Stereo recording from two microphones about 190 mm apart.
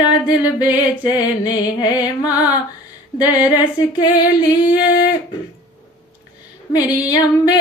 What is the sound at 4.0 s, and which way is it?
Female singing, 25° left (ahead or behind).